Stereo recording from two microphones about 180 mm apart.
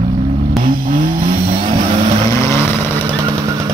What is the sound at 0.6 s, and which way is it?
Vehicle, 50° right (ahead or behind).